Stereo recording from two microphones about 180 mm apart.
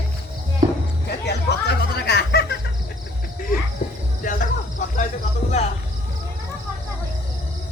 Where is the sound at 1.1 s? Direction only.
65° left (ahead or behind).